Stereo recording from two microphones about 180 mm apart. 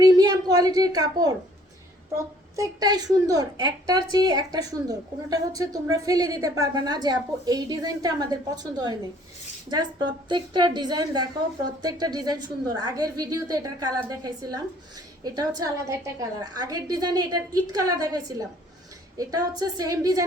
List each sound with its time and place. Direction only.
0.0 s a woman's voice: 20° right (ahead or behind)
10.2 s a woman's voice: 25° right (ahead or behind)